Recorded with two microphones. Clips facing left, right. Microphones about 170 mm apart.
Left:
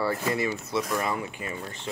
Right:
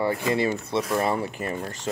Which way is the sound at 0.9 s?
35° right (ahead or behind).